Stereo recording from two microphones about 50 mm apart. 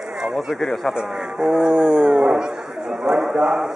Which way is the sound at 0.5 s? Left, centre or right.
Centre.